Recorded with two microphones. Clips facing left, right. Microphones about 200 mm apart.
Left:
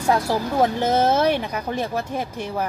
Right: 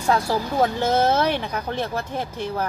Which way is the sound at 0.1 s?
10° left (ahead or behind).